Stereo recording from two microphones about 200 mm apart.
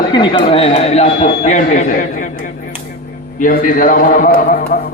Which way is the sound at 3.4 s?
40° left (ahead or behind).